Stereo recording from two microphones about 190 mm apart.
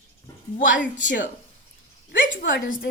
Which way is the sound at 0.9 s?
45° left (ahead or behind).